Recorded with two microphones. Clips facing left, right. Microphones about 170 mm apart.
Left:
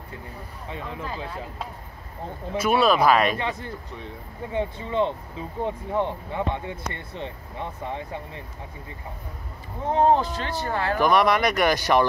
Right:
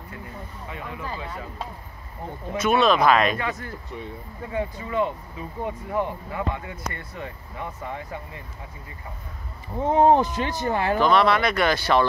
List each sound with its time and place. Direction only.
0.7 s speech: 30° left (ahead or behind)
2.6 s speech: 5° left (ahead or behind)
3.3 s speech: 25° left (ahead or behind)
9.9 s speech: 20° right (ahead or behind)
11.0 s speech: 15° left (ahead or behind)